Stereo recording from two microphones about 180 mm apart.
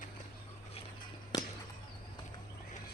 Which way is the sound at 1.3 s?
20° left (ahead or behind).